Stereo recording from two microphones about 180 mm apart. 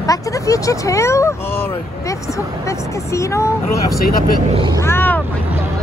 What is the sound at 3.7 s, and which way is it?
Speech, 55° left (ahead or behind).